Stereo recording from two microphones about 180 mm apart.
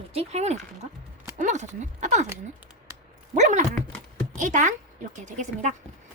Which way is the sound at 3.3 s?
40° right (ahead or behind).